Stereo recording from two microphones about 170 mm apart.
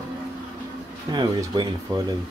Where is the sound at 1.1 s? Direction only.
25° right (ahead or behind).